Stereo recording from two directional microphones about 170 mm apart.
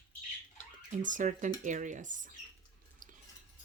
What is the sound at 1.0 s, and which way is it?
Speech, 50° right (ahead or behind).